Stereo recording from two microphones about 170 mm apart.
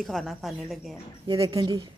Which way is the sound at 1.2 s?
20° right (ahead or behind).